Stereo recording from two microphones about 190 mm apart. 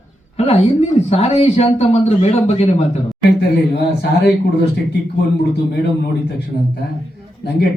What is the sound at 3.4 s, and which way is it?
A man's voice, 60° left (ahead or behind).